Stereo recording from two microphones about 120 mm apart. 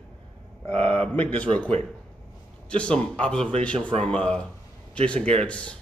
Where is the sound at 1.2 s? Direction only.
10° left (ahead or behind).